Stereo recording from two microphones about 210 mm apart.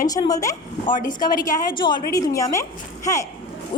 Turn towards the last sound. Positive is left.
turn(degrees=15)  # may be behind; listen again after turning